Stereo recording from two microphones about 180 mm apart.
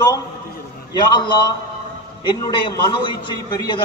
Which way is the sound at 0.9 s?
25° left (ahead or behind).